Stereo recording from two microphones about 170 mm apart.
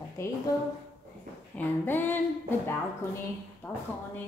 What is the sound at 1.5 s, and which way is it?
Speech, 10° left (ahead or behind).